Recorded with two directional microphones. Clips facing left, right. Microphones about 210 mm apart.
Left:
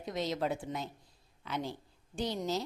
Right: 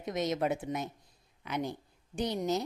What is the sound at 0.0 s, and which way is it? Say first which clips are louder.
A woman's voice: right 3 dB; 20° right (ahead or behind).